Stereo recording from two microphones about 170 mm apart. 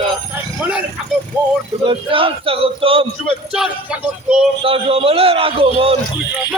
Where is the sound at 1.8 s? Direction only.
30° right (ahead or behind).